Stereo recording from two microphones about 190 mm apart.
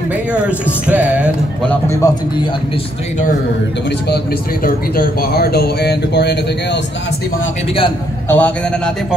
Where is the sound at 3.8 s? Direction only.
60° left (ahead or behind).